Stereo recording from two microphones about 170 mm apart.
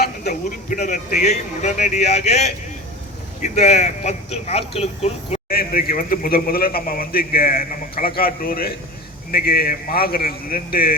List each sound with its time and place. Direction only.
0.3 s speech: 45° left (ahead or behind)
5.5 s speech: 60° left (ahead or behind)